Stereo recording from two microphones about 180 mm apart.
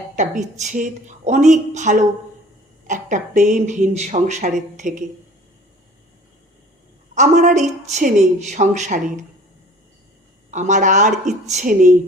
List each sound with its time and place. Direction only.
0.2 s speech: 45° right (ahead or behind)
7.1 s a woman's voice: 45° right (ahead or behind)
10.5 s speech: 45° right (ahead or behind)